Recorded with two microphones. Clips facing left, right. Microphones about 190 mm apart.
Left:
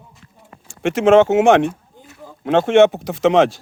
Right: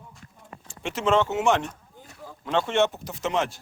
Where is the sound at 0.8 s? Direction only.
75° left (ahead or behind).